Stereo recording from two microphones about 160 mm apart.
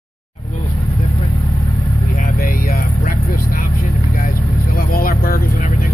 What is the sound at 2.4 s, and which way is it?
Vehicle, 70° left (ahead or behind).